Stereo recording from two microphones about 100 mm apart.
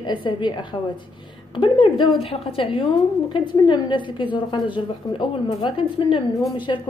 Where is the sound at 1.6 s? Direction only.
60° left (ahead or behind).